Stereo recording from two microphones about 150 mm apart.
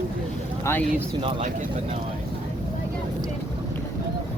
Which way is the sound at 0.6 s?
15° left (ahead or behind).